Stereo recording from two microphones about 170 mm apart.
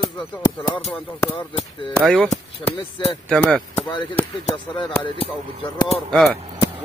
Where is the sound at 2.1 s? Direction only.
5° left (ahead or behind).